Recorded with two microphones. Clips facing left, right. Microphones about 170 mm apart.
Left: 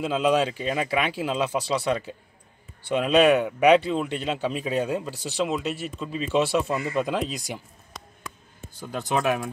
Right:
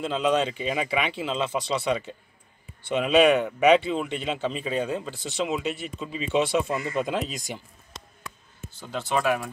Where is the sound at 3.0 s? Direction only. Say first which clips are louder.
Even; 5° right (ahead or behind).